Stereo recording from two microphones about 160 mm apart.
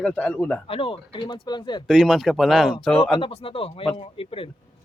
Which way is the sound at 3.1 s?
35° left (ahead or behind).